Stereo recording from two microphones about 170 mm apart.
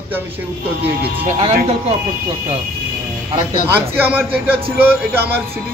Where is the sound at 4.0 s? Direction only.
10° right (ahead or behind).